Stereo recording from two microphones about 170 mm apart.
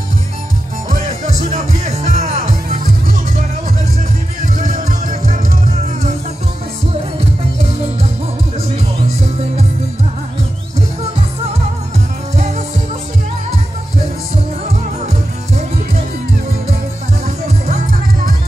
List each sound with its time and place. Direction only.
0.8 s music: 45° right (ahead or behind)
4.6 s music: 50° right (ahead or behind)
12.4 s music: 45° right (ahead or behind)